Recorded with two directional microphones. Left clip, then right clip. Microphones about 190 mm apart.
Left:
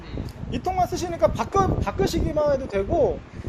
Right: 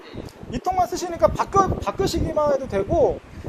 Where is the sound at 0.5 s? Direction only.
15° left (ahead or behind).